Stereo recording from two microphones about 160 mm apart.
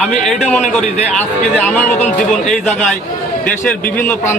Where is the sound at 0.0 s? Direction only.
5° left (ahead or behind).